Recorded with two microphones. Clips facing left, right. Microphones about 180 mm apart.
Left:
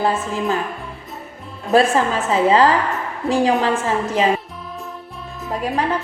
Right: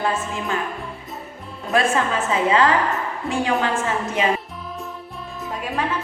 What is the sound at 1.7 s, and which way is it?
A woman's voice, 35° left (ahead or behind).